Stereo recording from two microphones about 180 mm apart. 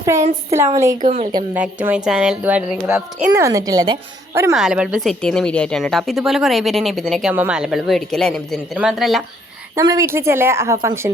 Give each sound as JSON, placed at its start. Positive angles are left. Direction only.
{"t": 0.0, "sound": "a woman's voice", "side_deg": -15}
{"t": 1.0, "sound": "a woman's voice", "side_deg": -40}
{"t": 1.5, "sound": "a woman's voice", "side_deg": -10}
{"t": 3.4, "sound": "a woman's voice", "side_deg": -20}
{"t": 4.5, "sound": "a woman's voice", "side_deg": -5}
{"t": 9.7, "sound": "a woman's voice", "side_deg": -20}